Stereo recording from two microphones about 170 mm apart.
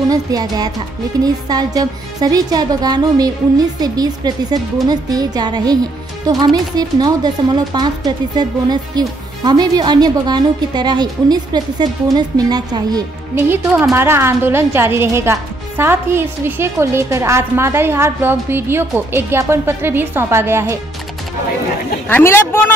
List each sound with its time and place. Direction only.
0.1 s a woman's voice: 20° right (ahead or behind)
22.1 s speech: 15° left (ahead or behind)